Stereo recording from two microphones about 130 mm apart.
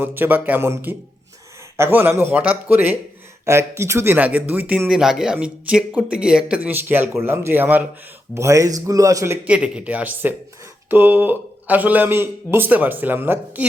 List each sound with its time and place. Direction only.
0.0 s a man's voice: 15° right (ahead or behind)